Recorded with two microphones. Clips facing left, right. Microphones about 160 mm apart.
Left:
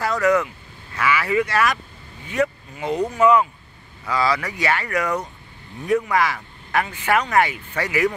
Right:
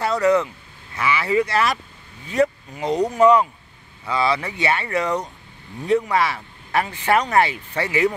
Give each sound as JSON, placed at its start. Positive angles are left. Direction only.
{"t": 0.0, "sound": "speech", "side_deg": -30}
{"t": 4.0, "sound": "speech", "side_deg": -25}